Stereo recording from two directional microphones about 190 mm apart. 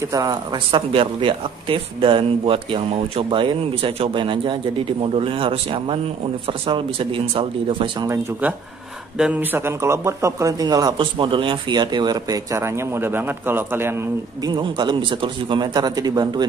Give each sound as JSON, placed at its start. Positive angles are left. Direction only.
{"t": 0.1, "sound": "speech", "side_deg": -20}
{"t": 8.1, "sound": "speech", "side_deg": -10}
{"t": 14.4, "sound": "speech", "side_deg": -25}